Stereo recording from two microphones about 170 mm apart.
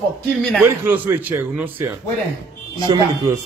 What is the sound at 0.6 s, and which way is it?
A man's voice, 10° right (ahead or behind).